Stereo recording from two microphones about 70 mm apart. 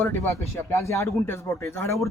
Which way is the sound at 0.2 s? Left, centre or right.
Left.